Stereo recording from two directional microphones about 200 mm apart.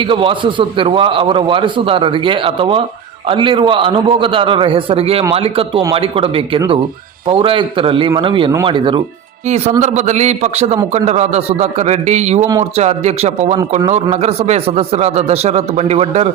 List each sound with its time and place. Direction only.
0.0 s a man's voice: 25° right (ahead or behind)
9.8 s speech: 35° right (ahead or behind)